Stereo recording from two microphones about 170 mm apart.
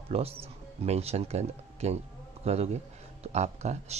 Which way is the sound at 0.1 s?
35° right (ahead or behind).